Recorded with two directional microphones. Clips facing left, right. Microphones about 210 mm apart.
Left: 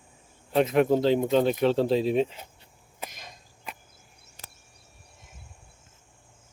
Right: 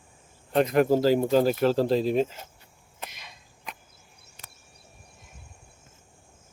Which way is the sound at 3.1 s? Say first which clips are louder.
Left 3 dB; 45° left (ahead or behind).